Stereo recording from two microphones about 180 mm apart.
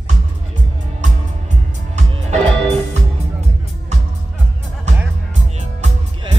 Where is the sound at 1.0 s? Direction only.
40° right (ahead or behind).